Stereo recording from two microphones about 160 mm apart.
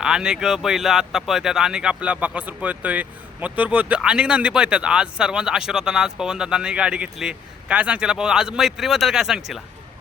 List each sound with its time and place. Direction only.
0.0 s speech: 5° right (ahead or behind)